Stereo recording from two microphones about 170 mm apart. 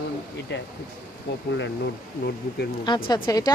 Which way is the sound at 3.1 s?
20° left (ahead or behind).